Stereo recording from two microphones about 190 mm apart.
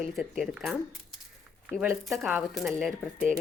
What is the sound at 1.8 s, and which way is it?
Speech, 5° right (ahead or behind).